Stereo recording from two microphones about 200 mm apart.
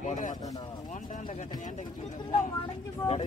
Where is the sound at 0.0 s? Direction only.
40° left (ahead or behind).